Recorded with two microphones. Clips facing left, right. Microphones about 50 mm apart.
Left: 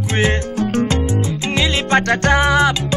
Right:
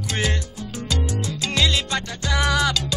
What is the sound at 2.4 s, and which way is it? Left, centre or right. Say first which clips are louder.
Music: left 2 dB; left.